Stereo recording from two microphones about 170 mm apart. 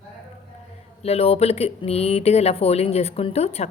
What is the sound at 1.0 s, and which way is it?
A woman's voice, 35° left (ahead or behind).